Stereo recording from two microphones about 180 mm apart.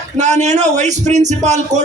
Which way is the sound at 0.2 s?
40° right (ahead or behind).